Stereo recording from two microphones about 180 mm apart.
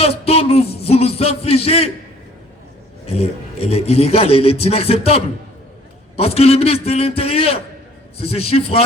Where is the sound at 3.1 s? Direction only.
35° left (ahead or behind).